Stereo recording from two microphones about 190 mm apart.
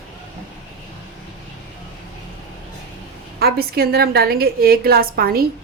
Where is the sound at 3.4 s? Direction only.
55° right (ahead or behind).